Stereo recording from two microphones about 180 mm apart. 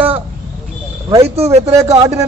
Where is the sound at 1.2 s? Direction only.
35° right (ahead or behind).